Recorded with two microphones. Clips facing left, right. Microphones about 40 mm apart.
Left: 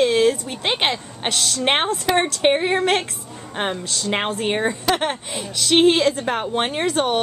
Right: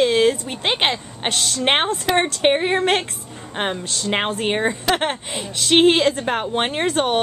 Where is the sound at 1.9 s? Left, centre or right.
Right.